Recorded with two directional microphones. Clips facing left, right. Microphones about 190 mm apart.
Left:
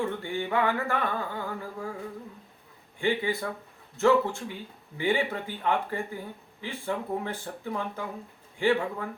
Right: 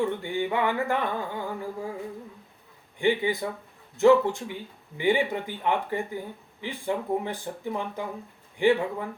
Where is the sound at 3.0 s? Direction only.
15° right (ahead or behind).